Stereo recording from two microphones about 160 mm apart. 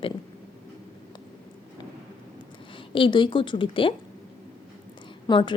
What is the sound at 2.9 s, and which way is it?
Speech, 30° left (ahead or behind).